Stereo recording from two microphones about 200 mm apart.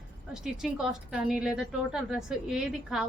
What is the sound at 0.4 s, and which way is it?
A woman's voice, 5° right (ahead or behind).